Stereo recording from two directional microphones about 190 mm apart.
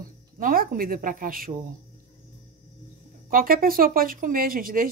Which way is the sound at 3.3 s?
50° right (ahead or behind).